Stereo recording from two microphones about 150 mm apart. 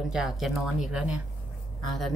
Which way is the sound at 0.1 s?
5° right (ahead or behind).